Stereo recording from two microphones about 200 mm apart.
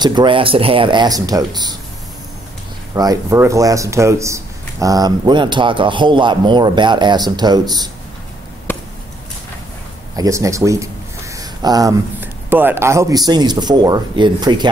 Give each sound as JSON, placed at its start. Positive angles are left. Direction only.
{"t": 0.0, "sound": "speech", "side_deg": -20}
{"t": 3.0, "sound": "speech", "side_deg": -15}
{"t": 8.7, "sound": "chop", "side_deg": 10}
{"t": 10.1, "sound": "speech", "side_deg": -15}